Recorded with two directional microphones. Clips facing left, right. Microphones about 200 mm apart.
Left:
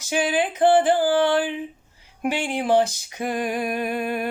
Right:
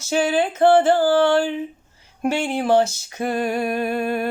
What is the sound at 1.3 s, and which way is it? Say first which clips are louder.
Humming: right 3 dB; 45° right (ahead or behind).